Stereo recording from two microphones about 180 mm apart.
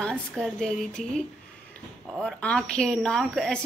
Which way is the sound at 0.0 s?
5° left (ahead or behind).